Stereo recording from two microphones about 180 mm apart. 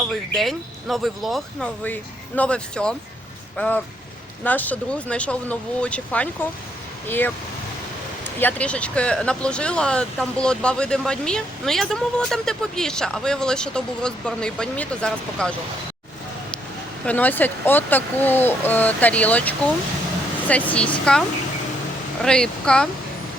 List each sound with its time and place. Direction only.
0.1 s speech: centre (ahead or behind)
17.1 s speech: 10° left (ahead or behind)